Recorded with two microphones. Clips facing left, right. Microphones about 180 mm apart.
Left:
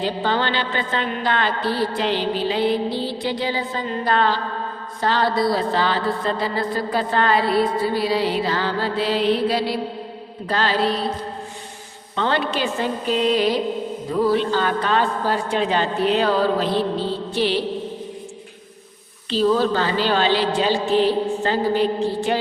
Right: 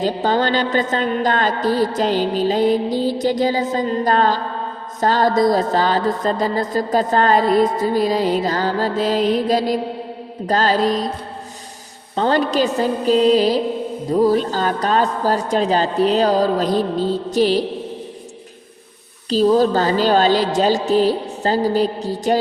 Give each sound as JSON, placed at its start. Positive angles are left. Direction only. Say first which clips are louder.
{"t": 0.0, "sound": "music", "louder": "right 4 dB", "side_deg": -40}
{"t": 10.4, "sound": "a woman's voice", "louder": "right 4 dB", "side_deg": -40}
{"t": 12.1, "sound": "a woman's voice", "louder": "right 5 dB", "side_deg": -40}
{"t": 19.3, "sound": "a woman's voice", "louder": "right 4 dB", "side_deg": -40}